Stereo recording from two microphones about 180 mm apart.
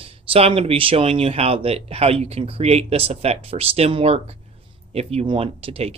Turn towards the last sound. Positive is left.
turn(degrees=-30)  # may be behind; listen again after turning